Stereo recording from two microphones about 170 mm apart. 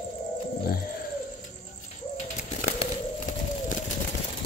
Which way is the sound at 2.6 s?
45° left (ahead or behind).